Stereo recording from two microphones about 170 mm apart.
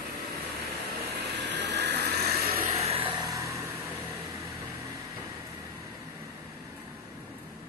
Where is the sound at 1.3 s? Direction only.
90° right.